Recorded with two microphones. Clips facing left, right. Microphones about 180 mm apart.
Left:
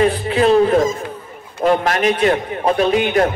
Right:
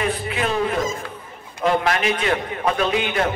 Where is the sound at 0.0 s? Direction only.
35° left (ahead or behind).